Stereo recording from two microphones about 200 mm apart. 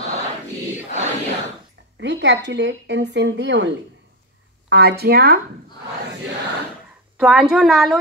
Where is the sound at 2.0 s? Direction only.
60° right (ahead or behind).